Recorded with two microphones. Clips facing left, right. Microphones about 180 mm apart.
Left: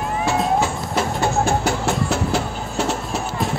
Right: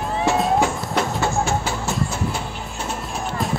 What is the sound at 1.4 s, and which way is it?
Vehicle, 70° left (ahead or behind).